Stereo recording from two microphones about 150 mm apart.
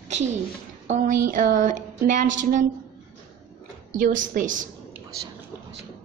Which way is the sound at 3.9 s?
60° right (ahead or behind).